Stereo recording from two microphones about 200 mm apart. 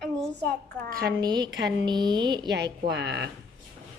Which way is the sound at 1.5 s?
60° right (ahead or behind).